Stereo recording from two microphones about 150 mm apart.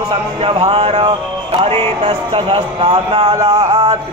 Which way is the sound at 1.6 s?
40° right (ahead or behind).